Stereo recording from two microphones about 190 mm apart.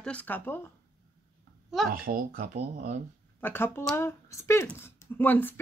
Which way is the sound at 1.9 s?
50° right (ahead or behind).